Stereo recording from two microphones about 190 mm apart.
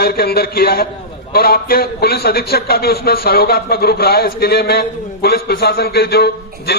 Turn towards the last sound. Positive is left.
turn(degrees=55)  # may be behind; listen again after turning